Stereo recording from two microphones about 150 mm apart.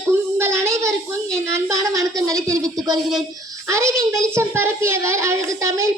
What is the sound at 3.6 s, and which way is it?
A woman's voice, 20° right (ahead or behind).